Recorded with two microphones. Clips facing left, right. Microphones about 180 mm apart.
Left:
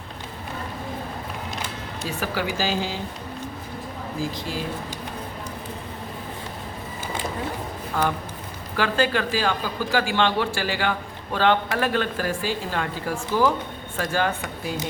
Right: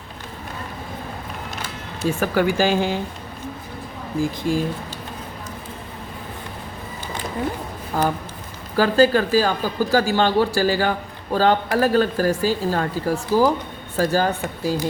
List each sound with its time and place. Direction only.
2.0 s speech: 50° right (ahead or behind)
4.2 s speech: 50° right (ahead or behind)
7.9 s speech: 40° right (ahead or behind)